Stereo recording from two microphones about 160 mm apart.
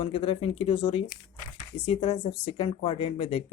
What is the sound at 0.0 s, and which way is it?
Speech, 35° left (ahead or behind).